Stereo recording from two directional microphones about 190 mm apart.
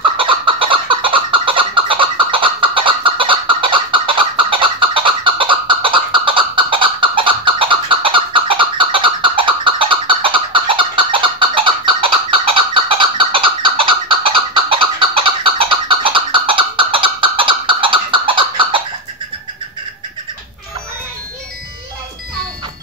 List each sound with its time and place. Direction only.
0.0 s fowl: 25° right (ahead or behind)